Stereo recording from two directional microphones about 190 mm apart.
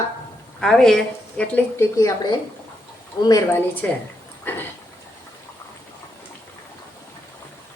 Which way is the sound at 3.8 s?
10° left (ahead or behind).